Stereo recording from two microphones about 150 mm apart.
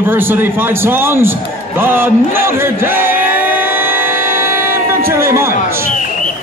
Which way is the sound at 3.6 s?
15° right (ahead or behind).